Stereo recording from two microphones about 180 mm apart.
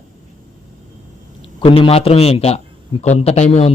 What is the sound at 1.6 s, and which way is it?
A man's voice, 30° left (ahead or behind).